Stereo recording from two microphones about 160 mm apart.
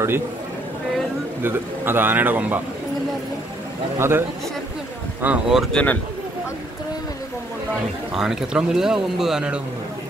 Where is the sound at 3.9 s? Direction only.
15° right (ahead or behind).